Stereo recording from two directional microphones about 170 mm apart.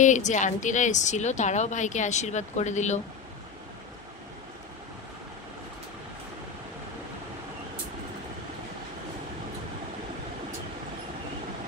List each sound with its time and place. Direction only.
0.0 s speech: 45° left (ahead or behind)